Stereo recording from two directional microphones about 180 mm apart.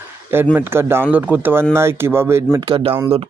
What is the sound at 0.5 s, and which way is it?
Speech, 15° right (ahead or behind).